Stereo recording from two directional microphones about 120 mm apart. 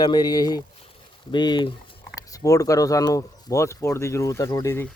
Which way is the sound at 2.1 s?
30° left (ahead or behind).